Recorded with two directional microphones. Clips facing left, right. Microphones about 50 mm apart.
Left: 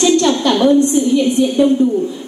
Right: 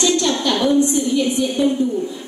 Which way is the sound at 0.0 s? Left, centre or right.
Left.